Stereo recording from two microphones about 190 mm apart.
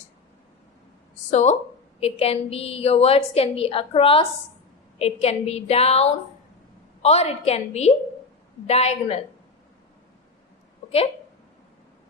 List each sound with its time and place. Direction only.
1.3 s a woman's voice: 35° left (ahead or behind)